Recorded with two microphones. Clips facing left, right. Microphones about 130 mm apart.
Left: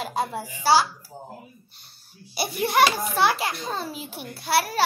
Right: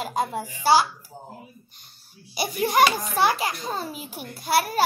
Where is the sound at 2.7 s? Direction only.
45° right (ahead or behind).